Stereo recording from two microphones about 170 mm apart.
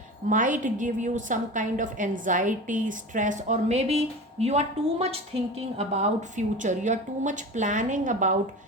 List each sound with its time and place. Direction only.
0.3 s a woman's voice: 50° right (ahead or behind)